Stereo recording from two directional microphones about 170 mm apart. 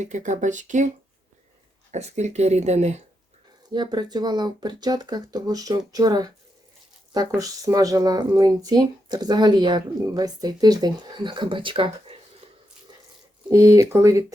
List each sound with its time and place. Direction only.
0.0 s speech: 45° right (ahead or behind)
1.9 s speech: 40° right (ahead or behind)
3.7 s speech: 25° right (ahead or behind)
7.3 s speech: 20° right (ahead or behind)
13.5 s speech: 20° right (ahead or behind)